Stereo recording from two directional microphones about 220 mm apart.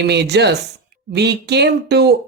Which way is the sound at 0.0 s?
50° right (ahead or behind).